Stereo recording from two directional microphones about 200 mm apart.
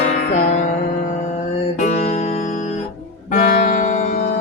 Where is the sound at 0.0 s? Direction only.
35° left (ahead or behind).